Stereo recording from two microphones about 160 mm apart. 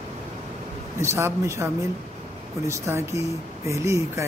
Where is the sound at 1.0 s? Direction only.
15° right (ahead or behind).